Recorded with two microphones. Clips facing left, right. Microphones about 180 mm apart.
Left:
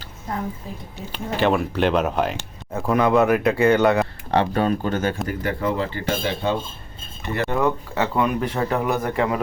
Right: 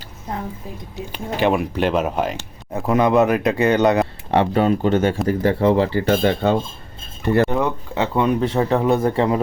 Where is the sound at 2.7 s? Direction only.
20° right (ahead or behind).